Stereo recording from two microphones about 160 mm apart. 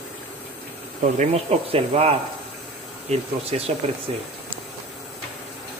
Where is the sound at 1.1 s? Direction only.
40° right (ahead or behind).